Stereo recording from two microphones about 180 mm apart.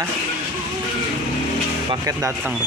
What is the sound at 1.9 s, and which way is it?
Speech, 15° right (ahead or behind).